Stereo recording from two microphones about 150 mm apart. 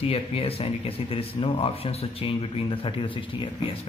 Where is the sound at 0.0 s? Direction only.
40° left (ahead or behind).